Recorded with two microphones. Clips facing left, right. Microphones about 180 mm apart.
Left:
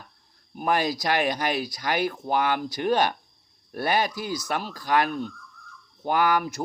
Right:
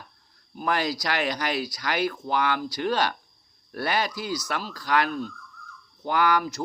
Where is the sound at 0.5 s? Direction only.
15° left (ahead or behind).